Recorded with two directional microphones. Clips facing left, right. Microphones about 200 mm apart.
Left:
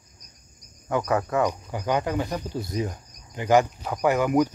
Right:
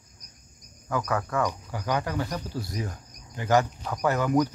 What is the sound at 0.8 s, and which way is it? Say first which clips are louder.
Speech: left 4 dB; 25° left (ahead or behind).